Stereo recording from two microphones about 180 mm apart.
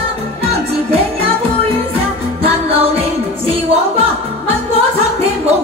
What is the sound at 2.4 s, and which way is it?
Music, 30° right (ahead or behind).